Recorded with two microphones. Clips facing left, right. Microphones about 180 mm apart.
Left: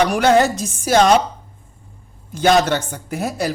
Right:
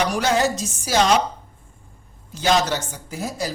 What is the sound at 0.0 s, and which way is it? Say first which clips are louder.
Speech: left 6 dB; 60° left (ahead or behind).